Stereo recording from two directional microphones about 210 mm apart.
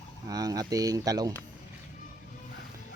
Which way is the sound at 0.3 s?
15° right (ahead or behind).